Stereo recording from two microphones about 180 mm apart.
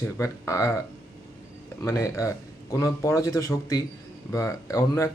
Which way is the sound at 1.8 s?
15° left (ahead or behind).